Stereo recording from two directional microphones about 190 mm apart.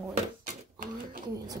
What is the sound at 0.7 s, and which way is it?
Speech, 50° right (ahead or behind).